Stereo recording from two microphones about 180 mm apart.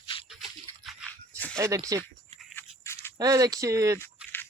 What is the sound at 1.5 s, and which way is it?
Speech, 20° right (ahead or behind).